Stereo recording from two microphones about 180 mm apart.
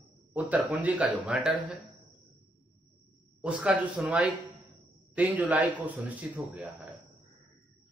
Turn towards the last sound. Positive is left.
turn(degrees=-10)  # may be behind; listen again after turning